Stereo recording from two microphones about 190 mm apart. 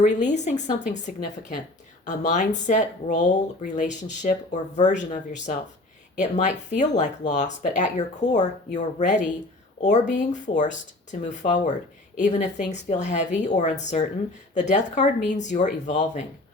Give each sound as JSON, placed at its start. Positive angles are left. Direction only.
{"t": 0.0, "sound": "speech", "side_deg": 40}